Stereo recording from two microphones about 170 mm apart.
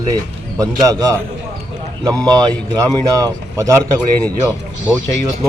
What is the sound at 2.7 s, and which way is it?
A man's voice, 20° right (ahead or behind).